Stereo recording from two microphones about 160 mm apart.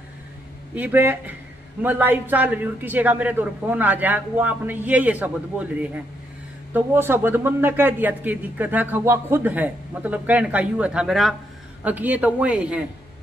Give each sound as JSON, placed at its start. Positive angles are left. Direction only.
{"t": 0.7, "sound": "a man's voice", "side_deg": -10}
{"t": 6.7, "sound": "a man's voice", "side_deg": -15}